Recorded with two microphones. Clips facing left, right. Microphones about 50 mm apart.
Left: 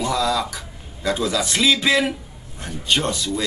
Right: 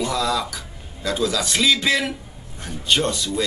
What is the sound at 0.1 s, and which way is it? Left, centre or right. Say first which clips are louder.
Speech: left 1 dB; centre.